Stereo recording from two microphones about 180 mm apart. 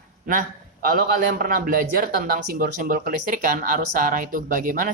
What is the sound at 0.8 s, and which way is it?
Speech, 55° right (ahead or behind).